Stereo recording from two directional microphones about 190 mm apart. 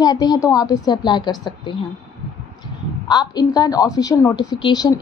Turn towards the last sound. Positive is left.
turn(degrees=20)  # may be behind; listen again after turning